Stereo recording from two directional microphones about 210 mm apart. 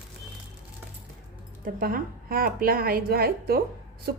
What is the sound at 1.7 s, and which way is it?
A woman's voice, 45° right (ahead or behind).